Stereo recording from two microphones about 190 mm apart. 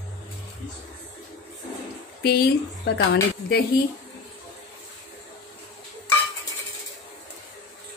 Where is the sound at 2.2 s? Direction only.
55° left (ahead or behind).